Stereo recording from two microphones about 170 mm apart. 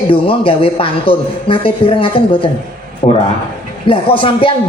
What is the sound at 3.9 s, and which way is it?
Speech, 30° left (ahead or behind).